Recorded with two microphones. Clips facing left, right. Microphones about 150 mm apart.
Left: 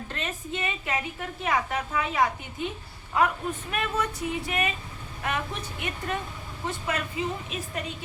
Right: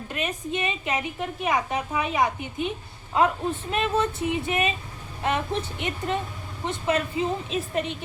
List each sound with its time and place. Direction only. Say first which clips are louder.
0.1 s speech: right 6 dB; 15° right (ahead or behind)